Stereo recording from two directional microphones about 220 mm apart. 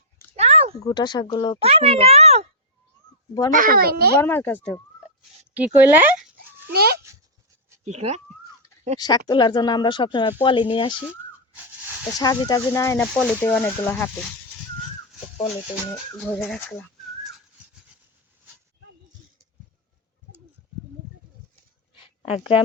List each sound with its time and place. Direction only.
0.3 s a sound: 30° right (ahead or behind)
0.9 s speech: 20° left (ahead or behind)
1.6 s a child's voice: 25° right (ahead or behind)
3.5 s a child's voice: 40° right (ahead or behind)
4.2 s speech: 10° left (ahead or behind)
5.5 s speech: 10° right (ahead or behind)
6.7 s a child's voice: 45° right (ahead or behind)
7.9 s speech: 30° right (ahead or behind)
9.0 s speech: 15° left (ahead or behind)
12.2 s speech: 15° left (ahead or behind)
16.1 s speech: 5° left (ahead or behind)
21.9 s a sound: 25° left (ahead or behind)